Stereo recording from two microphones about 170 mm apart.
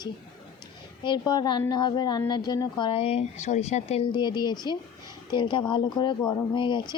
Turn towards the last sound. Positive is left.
turn(degrees=30)  # may be behind; listen again after turning